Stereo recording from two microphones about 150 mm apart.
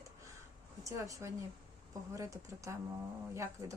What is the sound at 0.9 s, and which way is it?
Speech, 20° right (ahead or behind).